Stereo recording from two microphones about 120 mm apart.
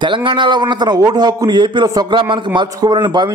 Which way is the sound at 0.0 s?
45° right (ahead or behind).